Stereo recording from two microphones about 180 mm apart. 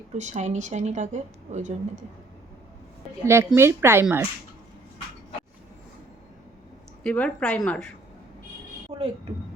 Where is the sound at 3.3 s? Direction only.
15° right (ahead or behind).